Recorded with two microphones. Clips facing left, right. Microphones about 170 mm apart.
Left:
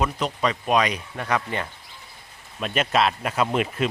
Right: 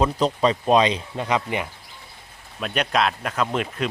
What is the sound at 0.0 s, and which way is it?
Speech, 30° right (ahead or behind).